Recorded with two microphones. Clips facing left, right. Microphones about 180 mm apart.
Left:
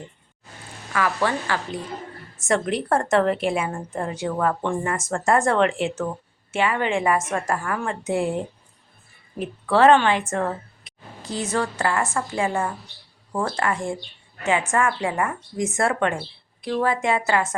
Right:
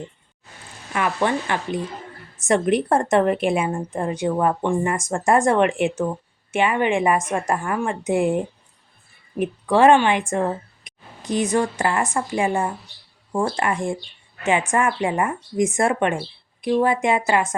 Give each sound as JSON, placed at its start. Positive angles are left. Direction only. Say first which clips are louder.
{"t": 0.9, "sound": "a woman's voice", "louder": "right 2 dB", "side_deg": -20}